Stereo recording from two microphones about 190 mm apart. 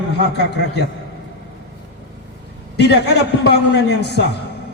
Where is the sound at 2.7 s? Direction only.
60° left (ahead or behind).